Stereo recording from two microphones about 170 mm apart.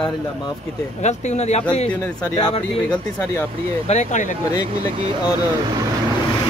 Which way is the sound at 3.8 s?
40° left (ahead or behind).